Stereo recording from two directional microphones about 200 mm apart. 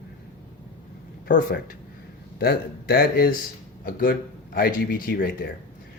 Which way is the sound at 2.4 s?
50° left (ahead or behind).